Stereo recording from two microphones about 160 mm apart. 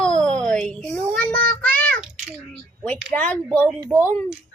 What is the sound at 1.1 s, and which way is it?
Child singing, 10° left (ahead or behind).